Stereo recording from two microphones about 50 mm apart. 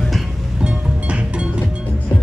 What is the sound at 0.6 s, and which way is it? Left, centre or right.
Music, right.